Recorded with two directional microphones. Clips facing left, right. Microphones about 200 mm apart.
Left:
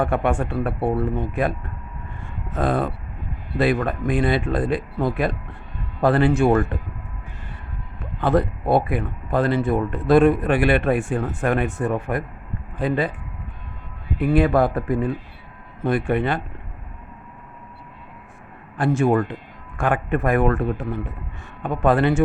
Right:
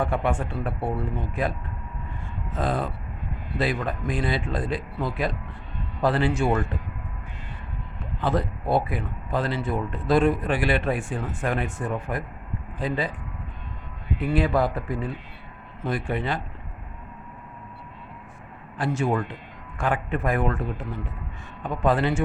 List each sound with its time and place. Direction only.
0.0 s speech: 55° left (ahead or behind)
2.6 s speech: 55° left (ahead or behind)
8.2 s speech: 60° left (ahead or behind)
14.2 s speech: 55° left (ahead or behind)
18.8 s speech: 55° left (ahead or behind)